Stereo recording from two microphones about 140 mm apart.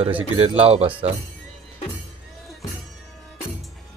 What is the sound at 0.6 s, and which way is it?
Speech, 45° right (ahead or behind).